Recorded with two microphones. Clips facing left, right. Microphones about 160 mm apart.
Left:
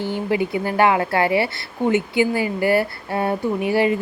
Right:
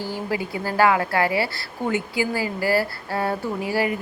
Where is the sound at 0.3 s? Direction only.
20° left (ahead or behind).